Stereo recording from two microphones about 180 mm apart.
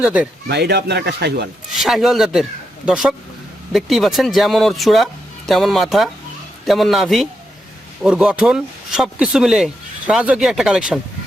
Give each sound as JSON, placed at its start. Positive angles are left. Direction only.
{"t": 0.0, "sound": "speech", "side_deg": -5}
{"t": 0.4, "sound": "speech", "side_deg": -65}
{"t": 1.7, "sound": "speech", "side_deg": 0}